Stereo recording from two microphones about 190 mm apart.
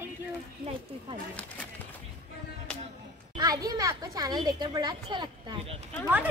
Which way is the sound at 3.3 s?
20° right (ahead or behind).